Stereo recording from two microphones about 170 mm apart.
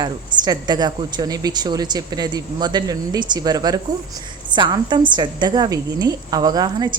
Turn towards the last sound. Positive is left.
turn(degrees=-25)  # may be behind; listen again after turning